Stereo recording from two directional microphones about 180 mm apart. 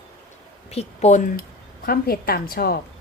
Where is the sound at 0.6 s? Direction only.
35° left (ahead or behind).